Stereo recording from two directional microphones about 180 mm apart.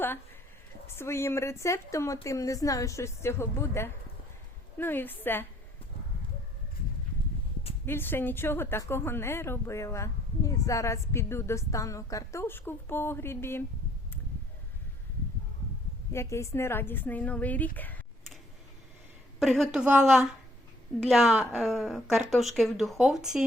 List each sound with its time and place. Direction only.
0.9 s speech: 15° left (ahead or behind)
7.9 s speech: 10° left (ahead or behind)
16.1 s speech: 15° left (ahead or behind)
17.7 s a sound: 10° left (ahead or behind)
19.4 s a woman's voice: centre (ahead or behind)